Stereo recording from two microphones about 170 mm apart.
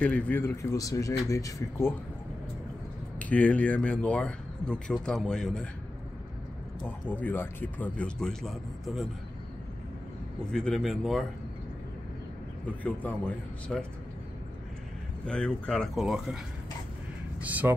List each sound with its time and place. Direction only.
0.0 s speech: 10° left (ahead or behind)
3.2 s speech: 10° left (ahead or behind)
6.8 s speech: 10° left (ahead or behind)
10.5 s speech: 5° left (ahead or behind)
13.7 s speech: centre (ahead or behind)
15.2 s speech: 5° left (ahead or behind)
17.4 s speech: 10° right (ahead or behind)